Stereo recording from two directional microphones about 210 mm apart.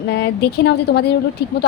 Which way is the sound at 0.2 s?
50° left (ahead or behind).